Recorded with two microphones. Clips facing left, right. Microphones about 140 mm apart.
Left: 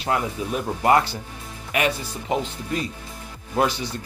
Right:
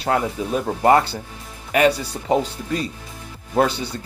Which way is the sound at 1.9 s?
70° right (ahead or behind).